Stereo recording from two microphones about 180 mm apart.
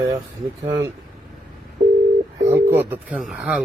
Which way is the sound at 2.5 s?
15° right (ahead or behind).